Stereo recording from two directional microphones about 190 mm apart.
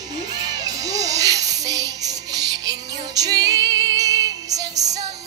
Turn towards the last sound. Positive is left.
turn(degrees=-35)  # may be behind; listen again after turning